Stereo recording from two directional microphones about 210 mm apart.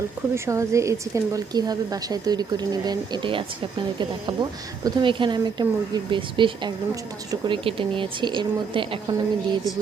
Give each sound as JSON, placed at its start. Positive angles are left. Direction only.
{"t": 0.3, "sound": "speech", "side_deg": -15}